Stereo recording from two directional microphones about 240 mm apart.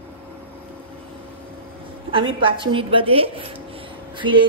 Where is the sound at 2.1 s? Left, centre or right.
Right.